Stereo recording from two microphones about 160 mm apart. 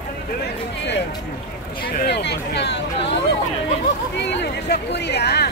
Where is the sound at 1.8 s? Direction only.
80° left.